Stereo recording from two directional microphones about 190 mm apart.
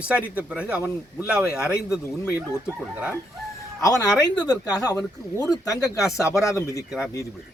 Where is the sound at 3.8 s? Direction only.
20° left (ahead or behind).